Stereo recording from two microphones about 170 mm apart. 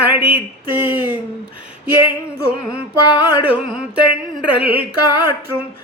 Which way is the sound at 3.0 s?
25° left (ahead or behind).